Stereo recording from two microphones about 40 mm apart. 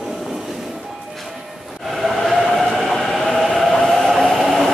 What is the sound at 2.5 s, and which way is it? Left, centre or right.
Train, centre.